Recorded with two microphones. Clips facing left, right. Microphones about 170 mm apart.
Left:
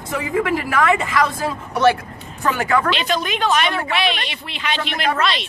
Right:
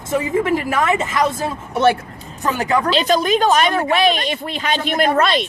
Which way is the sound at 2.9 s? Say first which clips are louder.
Right 6 dB; 40° right (ahead or behind).